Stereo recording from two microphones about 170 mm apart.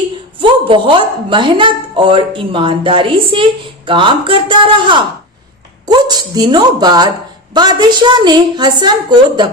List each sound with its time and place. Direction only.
0.3 s speech: 30° right (ahead or behind)